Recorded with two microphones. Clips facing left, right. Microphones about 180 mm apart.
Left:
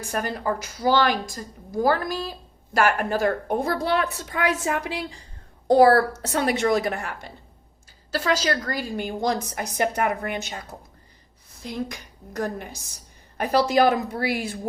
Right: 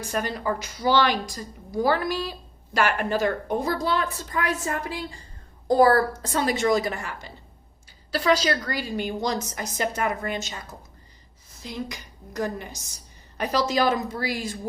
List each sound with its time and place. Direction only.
0.1 s a woman's voice: 50° left (ahead or behind)
3.8 s a woman's voice: 70° left (ahead or behind)
8.2 s a woman's voice: 45° left (ahead or behind); by 14.6 s 65° left (ahead or behind)